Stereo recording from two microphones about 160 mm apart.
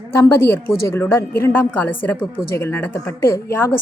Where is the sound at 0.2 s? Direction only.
15° left (ahead or behind).